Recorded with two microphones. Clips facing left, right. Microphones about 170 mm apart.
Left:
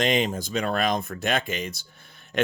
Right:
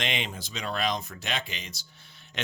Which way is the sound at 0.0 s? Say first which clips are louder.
Left 10 dB; 40° left (ahead or behind).